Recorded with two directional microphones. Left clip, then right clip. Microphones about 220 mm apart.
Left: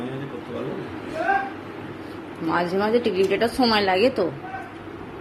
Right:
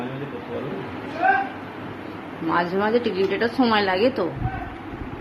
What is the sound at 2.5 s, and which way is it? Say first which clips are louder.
A woman's voice: even; centre (ahead or behind).